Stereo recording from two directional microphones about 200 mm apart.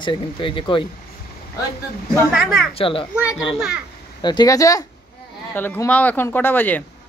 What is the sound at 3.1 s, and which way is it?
Speech, 5° right (ahead or behind).